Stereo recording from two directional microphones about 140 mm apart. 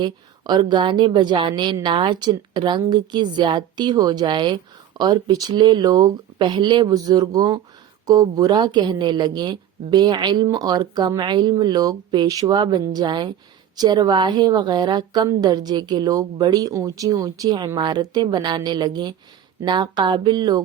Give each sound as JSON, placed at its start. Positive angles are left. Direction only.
{"t": 0.0, "sound": "a woman's voice", "side_deg": -30}